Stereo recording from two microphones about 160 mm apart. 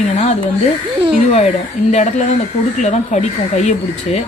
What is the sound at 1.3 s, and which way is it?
Speech, 45° left (ahead or behind).